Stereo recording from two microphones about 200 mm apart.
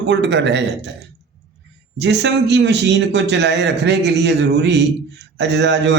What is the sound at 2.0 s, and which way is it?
A man's voice, 60° right (ahead or behind).